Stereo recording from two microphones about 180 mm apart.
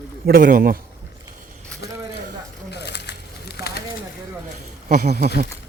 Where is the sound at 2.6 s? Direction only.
70° left (ahead or behind).